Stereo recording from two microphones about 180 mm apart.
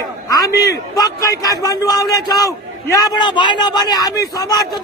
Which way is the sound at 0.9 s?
20° left (ahead or behind).